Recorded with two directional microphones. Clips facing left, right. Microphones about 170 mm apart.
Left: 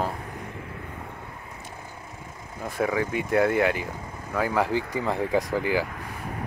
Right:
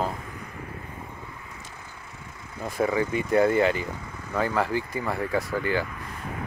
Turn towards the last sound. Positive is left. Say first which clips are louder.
# left 2 dB
turn(degrees=10)  # may be behind; listen again after turning